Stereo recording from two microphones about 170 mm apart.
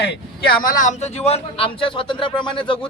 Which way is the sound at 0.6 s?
50° left (ahead or behind).